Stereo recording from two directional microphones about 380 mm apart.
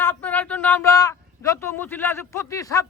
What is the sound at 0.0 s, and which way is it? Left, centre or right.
A man's voice, centre.